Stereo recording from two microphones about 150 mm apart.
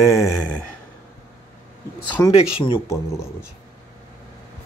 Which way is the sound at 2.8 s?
20° left (ahead or behind).